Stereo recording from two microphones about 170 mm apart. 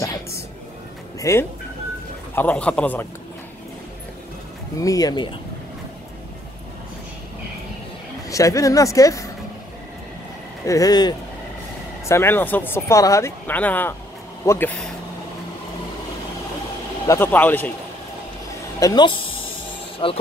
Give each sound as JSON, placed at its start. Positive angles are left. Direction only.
{"t": 1.3, "sound": "speech", "side_deg": 20}
{"t": 2.3, "sound": "speech", "side_deg": 10}
{"t": 4.7, "sound": "speech", "side_deg": 20}
{"t": 8.3, "sound": "speech", "side_deg": 20}
{"t": 10.6, "sound": "speech", "side_deg": 20}
{"t": 17.1, "sound": "speech", "side_deg": 10}
{"t": 18.8, "sound": "speech", "side_deg": 25}